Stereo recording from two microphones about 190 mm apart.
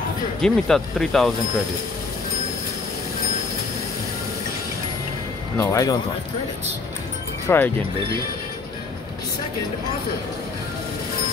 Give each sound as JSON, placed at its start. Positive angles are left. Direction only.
{"t": 0.4, "sound": "speech", "side_deg": 5}
{"t": 5.6, "sound": "speech", "side_deg": 15}
{"t": 7.4, "sound": "speech", "side_deg": 10}